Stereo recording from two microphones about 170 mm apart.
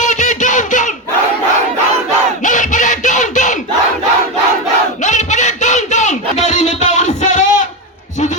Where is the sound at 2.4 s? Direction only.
45° left (ahead or behind).